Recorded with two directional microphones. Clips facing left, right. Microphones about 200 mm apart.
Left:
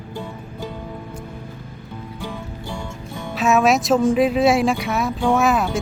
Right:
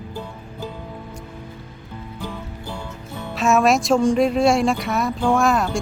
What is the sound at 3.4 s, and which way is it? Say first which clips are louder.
Speech: even; centre (ahead or behind).